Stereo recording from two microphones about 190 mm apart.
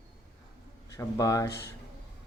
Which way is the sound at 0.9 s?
15° left (ahead or behind).